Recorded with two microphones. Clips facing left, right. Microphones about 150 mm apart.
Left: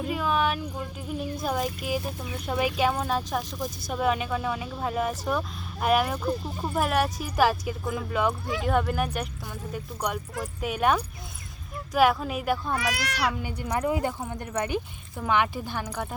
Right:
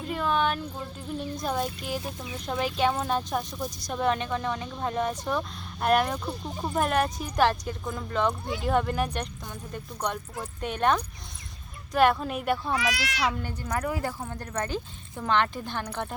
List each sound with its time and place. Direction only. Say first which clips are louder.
0.1 s speech: right 1 dB; 5° left (ahead or behind)
12.9 s speech: left 1 dB; 45° left (ahead or behind)
13.2 s speech: even; 10° left (ahead or behind)